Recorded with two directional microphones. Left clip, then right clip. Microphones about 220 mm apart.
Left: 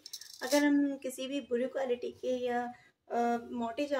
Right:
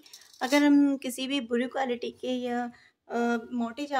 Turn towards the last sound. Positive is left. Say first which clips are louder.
# right 1 dB
turn(degrees=-50)  # may be behind; listen again after turning